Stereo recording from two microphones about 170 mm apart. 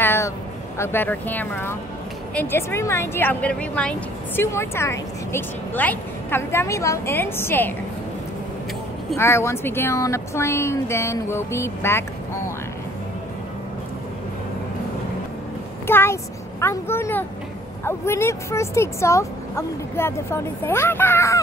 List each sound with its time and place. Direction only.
0.0 s a sound: 15° left (ahead or behind)
0.7 s speech: 10° left (ahead or behind)
9.1 s speech: 15° left (ahead or behind)
15.9 s speech: 15° left (ahead or behind)